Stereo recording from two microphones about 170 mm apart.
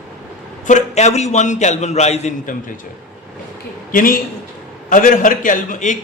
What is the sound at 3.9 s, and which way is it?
A man's voice, 55° left (ahead or behind).